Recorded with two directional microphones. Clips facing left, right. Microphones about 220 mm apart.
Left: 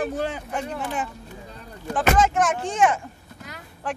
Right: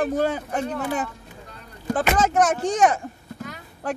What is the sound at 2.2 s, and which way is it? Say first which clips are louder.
Speech: right 2 dB; 40° right (ahead or behind).